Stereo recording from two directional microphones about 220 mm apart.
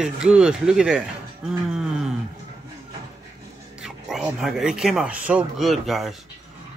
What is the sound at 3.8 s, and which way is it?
Speech, centre (ahead or behind).